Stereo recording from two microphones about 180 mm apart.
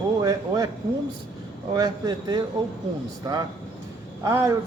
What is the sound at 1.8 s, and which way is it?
Speech, 20° right (ahead or behind).